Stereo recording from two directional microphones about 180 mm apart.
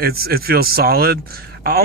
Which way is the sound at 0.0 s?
55° right (ahead or behind).